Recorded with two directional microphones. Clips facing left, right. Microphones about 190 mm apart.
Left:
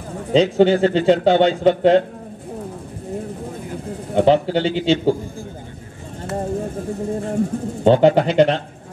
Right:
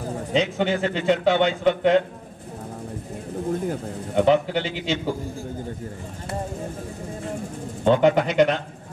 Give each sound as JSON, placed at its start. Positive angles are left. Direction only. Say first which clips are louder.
{"t": 0.3, "sound": "speech", "louder": "left 9 dB", "side_deg": 35}
{"t": 4.1, "sound": "speech", "louder": "left 4 dB", "side_deg": 35}
{"t": 7.8, "sound": "speech", "louder": "left 4 dB", "side_deg": 35}